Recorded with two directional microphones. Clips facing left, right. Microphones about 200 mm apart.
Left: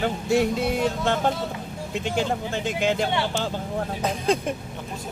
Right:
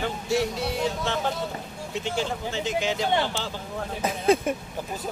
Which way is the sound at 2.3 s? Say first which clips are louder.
Left 2 dB; 55° left (ahead or behind).